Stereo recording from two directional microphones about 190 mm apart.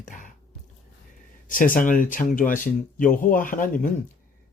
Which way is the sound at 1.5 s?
45° left (ahead or behind).